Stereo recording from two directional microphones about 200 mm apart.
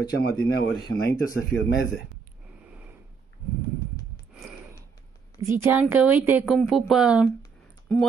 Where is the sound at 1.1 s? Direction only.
15° left (ahead or behind).